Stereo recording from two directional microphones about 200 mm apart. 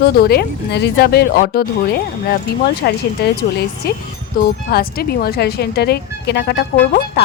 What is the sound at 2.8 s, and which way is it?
A woman's voice, 55° left (ahead or behind).